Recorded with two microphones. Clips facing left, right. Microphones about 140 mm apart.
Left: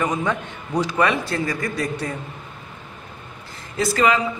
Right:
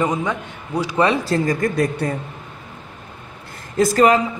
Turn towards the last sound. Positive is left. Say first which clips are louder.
# right 5 dB
turn(degrees=-45)  # may be behind; listen again after turning